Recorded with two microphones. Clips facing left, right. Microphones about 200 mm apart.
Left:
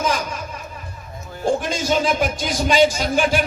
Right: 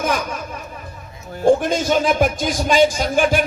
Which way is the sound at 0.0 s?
55° right (ahead or behind).